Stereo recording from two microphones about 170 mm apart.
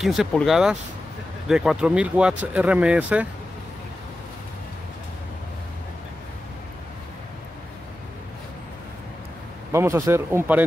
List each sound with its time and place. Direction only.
0.0 s speech: centre (ahead or behind)
9.7 s speech: 15° right (ahead or behind)